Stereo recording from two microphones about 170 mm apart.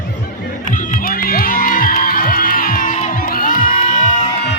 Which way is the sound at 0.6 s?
50° left (ahead or behind).